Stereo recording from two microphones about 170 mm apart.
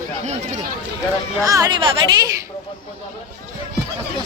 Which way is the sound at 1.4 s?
20° right (ahead or behind).